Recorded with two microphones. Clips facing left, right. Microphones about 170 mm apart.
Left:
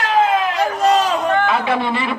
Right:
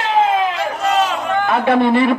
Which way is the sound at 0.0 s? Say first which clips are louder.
Right 1 dB; 25° right (ahead or behind).